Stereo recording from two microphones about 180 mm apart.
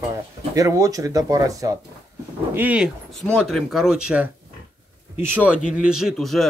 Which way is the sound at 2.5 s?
5° right (ahead or behind).